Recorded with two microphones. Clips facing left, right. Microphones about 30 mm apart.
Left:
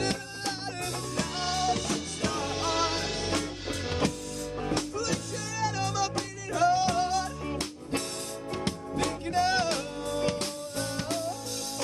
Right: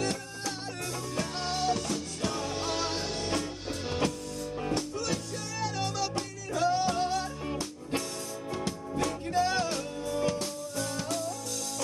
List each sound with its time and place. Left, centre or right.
0.0 s music: left
1.1 s music: left
2.6 s music: left
5.7 s music: left
6.8 s music: left
8.6 s music: left
10.8 s music: left